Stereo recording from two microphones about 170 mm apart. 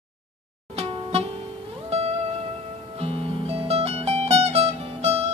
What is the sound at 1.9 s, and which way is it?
Music, 35° right (ahead or behind).